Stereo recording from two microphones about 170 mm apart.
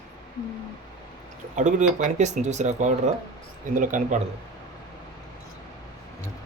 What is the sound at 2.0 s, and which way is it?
Speech, 45° right (ahead or behind).